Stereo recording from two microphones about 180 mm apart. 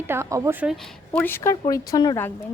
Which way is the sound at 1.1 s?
10° left (ahead or behind).